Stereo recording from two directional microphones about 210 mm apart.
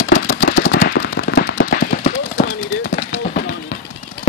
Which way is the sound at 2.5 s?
60° left (ahead or behind).